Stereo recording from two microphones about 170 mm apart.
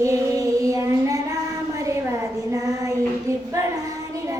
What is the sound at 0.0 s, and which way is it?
Child singing, 20° right (ahead or behind).